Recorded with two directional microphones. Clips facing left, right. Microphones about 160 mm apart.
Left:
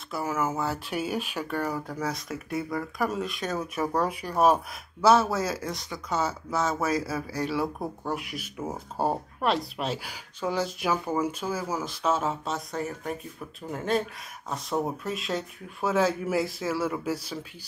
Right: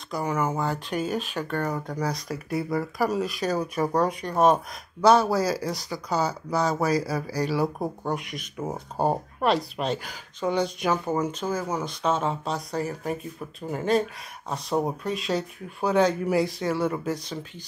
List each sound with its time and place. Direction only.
0.1 s speech: 5° left (ahead or behind)
7.6 s speech: 20° right (ahead or behind)
8.1 s speech: 5° left (ahead or behind)